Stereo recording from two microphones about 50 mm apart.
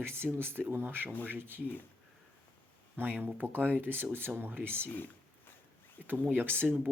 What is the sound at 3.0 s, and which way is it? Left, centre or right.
Speech, right.